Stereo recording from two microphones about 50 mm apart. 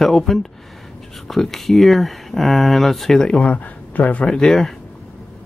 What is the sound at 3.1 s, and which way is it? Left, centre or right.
Speech, centre.